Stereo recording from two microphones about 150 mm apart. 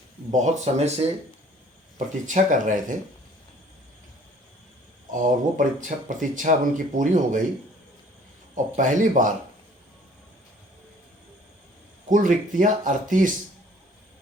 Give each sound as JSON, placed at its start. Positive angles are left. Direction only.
{"t": 0.3, "sound": "speech", "side_deg": -50}
{"t": 2.2, "sound": "speech", "side_deg": -60}
{"t": 5.1, "sound": "speech", "side_deg": -60}
{"t": 8.5, "sound": "speech", "side_deg": -55}
{"t": 12.0, "sound": "speech", "side_deg": -60}